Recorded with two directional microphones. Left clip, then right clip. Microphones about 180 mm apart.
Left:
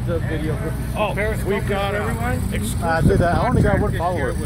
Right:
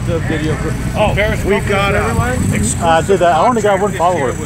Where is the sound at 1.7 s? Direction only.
50° right (ahead or behind).